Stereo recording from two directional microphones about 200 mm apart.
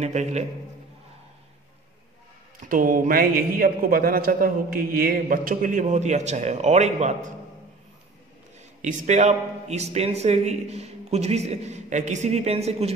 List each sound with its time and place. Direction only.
0.0 s speech: 35° right (ahead or behind)
2.6 s a man's voice: 45° right (ahead or behind)
8.8 s speech: 40° right (ahead or behind)